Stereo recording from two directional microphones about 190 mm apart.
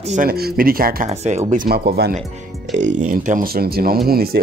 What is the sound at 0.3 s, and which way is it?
Speech, 55° right (ahead or behind).